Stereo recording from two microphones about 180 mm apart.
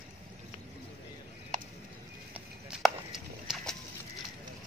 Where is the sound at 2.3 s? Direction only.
5° right (ahead or behind).